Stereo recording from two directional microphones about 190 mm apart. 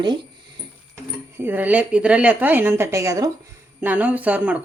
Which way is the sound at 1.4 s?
10° right (ahead or behind).